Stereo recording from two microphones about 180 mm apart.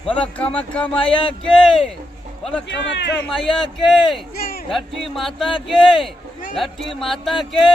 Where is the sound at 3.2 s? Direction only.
Centre (ahead or behind).